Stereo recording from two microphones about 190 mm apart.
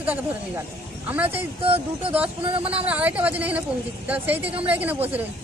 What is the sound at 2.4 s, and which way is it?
Speech, 30° right (ahead or behind).